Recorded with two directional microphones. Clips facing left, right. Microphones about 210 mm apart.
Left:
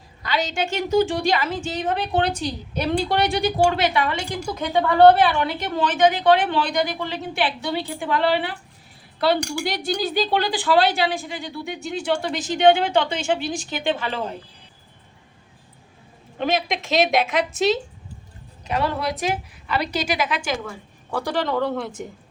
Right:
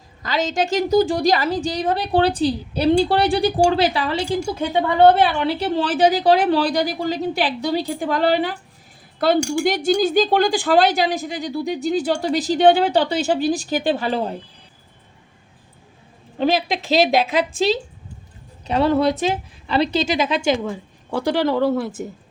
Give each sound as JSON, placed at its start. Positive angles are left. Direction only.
{"t": 0.2, "sound": "speech", "side_deg": -45}
{"t": 4.6, "sound": "speech", "side_deg": -20}
{"t": 16.4, "sound": "a woman's voice", "side_deg": -35}
{"t": 21.1, "sound": "speech", "side_deg": -10}